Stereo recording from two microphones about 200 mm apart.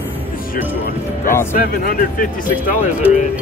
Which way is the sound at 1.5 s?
45° left (ahead or behind).